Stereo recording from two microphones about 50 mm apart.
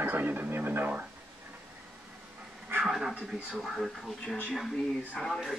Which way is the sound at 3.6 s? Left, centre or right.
Centre.